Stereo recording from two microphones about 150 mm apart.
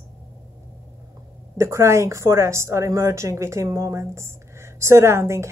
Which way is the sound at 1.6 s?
20° right (ahead or behind).